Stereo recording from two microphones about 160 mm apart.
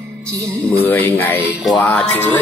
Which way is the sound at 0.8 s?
10° left (ahead or behind).